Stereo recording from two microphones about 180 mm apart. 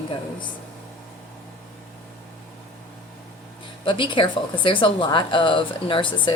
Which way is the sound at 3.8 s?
25° left (ahead or behind).